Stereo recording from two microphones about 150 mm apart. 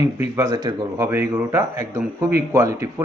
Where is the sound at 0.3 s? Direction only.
20° right (ahead or behind).